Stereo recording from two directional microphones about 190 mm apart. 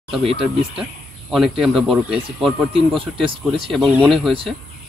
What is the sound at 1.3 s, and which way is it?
Speech, centre (ahead or behind).